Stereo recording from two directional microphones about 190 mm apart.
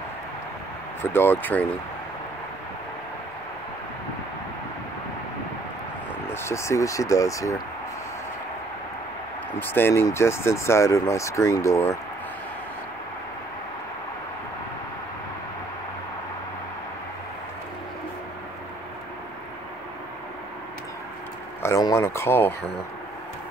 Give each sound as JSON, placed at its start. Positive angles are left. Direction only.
{"t": 1.1, "sound": "speech", "side_deg": 10}
{"t": 6.3, "sound": "speech", "side_deg": 15}
{"t": 9.6, "sound": "speech", "side_deg": 10}
{"t": 21.6, "sound": "a sound", "side_deg": 15}